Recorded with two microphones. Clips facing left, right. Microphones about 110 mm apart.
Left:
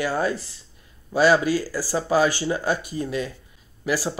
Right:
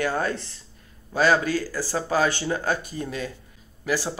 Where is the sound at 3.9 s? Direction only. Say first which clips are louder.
Left 1 dB; 10° left (ahead or behind).